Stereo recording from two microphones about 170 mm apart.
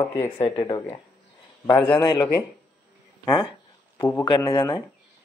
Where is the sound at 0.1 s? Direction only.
35° left (ahead or behind).